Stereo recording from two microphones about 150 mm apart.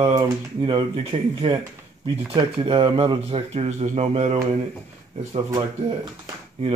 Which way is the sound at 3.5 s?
45° right (ahead or behind).